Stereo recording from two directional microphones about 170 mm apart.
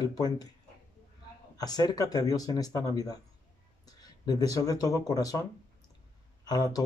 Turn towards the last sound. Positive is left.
turn(degrees=20)  # may be behind; listen again after turning